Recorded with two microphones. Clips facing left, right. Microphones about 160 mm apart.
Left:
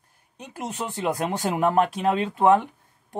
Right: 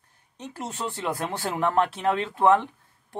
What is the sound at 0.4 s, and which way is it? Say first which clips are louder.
Speech: left 1 dB; 15° left (ahead or behind).